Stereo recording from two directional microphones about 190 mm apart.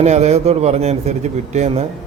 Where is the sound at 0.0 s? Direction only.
35° right (ahead or behind).